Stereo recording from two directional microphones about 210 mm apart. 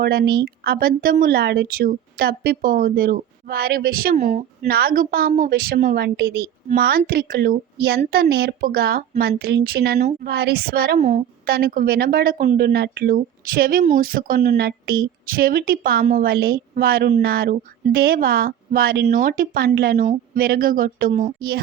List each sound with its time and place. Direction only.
0.0 s a woman's voice: 50° right (ahead or behind)